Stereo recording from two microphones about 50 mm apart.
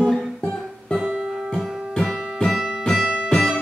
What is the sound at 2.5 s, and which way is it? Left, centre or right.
Music, centre.